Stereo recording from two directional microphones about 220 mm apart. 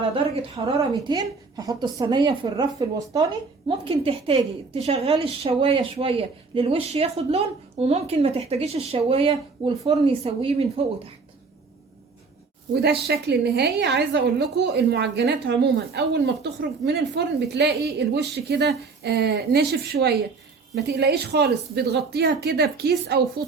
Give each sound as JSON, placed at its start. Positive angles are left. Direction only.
{"t": 0.6, "sound": "a woman's voice", "side_deg": -25}
{"t": 12.7, "sound": "a woman's voice", "side_deg": -50}